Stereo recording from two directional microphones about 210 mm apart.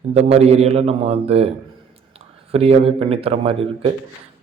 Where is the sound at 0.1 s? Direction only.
30° right (ahead or behind).